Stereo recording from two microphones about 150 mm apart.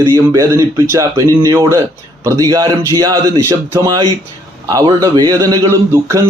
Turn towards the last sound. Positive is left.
turn(degrees=-20)  # may be behind; listen again after turning